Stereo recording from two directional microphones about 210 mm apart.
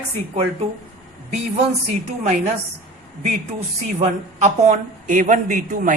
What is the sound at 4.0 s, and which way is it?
A woman's voice, 35° right (ahead or behind).